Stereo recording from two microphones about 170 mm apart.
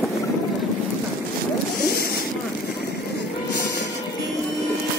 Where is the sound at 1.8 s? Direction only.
60° left (ahead or behind).